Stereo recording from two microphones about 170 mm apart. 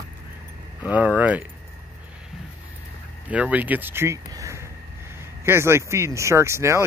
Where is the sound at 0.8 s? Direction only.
10° right (ahead or behind).